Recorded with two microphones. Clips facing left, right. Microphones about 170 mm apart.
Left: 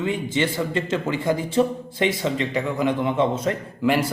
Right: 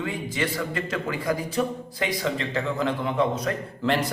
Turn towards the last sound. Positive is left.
turn(degrees=10)  # may be behind; listen again after turning